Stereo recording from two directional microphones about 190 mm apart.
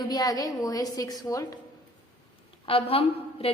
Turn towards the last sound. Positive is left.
turn(degrees=30)  # may be behind; listen again after turning